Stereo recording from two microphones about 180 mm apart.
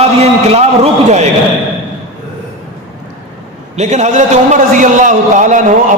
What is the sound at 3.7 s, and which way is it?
A man's voice, 40° right (ahead or behind).